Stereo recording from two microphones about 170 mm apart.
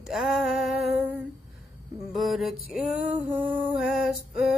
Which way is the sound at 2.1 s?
Centre (ahead or behind).